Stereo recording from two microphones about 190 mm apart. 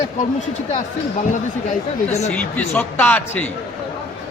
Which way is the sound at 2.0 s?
35° left (ahead or behind).